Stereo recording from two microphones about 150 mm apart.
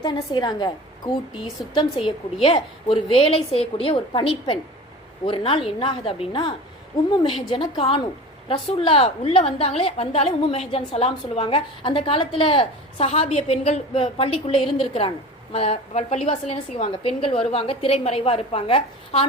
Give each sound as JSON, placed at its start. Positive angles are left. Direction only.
{"t": 0.0, "sound": "a woman's voice", "side_deg": 30}
{"t": 7.5, "sound": "a woman's voice", "side_deg": 35}